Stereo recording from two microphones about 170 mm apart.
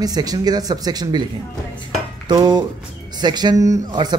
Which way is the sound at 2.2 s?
25° right (ahead or behind).